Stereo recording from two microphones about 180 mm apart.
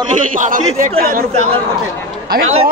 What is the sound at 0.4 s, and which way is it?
Speech, 45° right (ahead or behind).